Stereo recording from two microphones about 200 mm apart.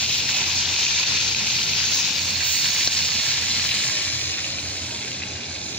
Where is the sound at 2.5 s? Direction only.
Centre (ahead or behind).